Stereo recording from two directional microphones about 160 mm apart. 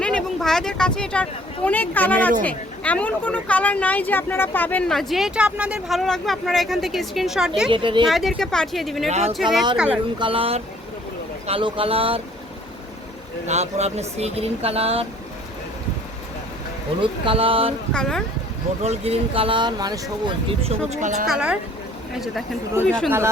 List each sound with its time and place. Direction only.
0.0 s speech: 5° left (ahead or behind)
7.7 s speech: 30° right (ahead or behind)
8.0 s speech: centre (ahead or behind)
9.0 s speech: 45° right (ahead or behind)
9.3 s speech: centre (ahead or behind)
10.2 s speech: 35° right (ahead or behind)
13.5 s speech: 45° right (ahead or behind)
17.0 s speech: 35° right (ahead or behind)
17.9 s speech: 5° left (ahead or behind)
18.8 s speech: 40° right (ahead or behind)
21.2 s speech: 5° right (ahead or behind)
22.8 s speech: 5° left (ahead or behind)